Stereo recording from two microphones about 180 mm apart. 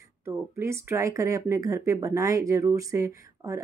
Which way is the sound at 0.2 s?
15° right (ahead or behind).